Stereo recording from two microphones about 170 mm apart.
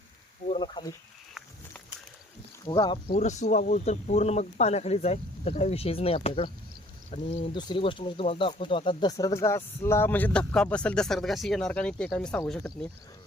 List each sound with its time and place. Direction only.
0.6 s speech: 25° left (ahead or behind)
1.3 s walk: centre (ahead or behind)
2.6 s speech: 25° left (ahead or behind)
3.2 s speech: 45° left (ahead or behind)
7.5 s speech: 25° left (ahead or behind); by 12.9 s 5° left (ahead or behind)